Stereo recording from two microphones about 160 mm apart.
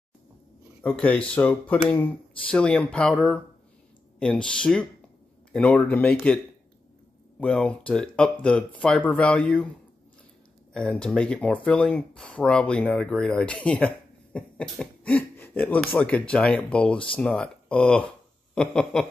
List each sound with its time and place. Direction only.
0.8 s speech: 5° left (ahead or behind)
7.3 s speech: 5° left (ahead or behind)
10.7 s speech: 5° left (ahead or behind)